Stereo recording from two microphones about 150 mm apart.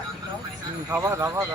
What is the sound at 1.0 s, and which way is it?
Speech, 20° right (ahead or behind).